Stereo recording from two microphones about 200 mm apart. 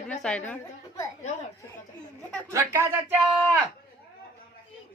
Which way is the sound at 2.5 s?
10° right (ahead or behind).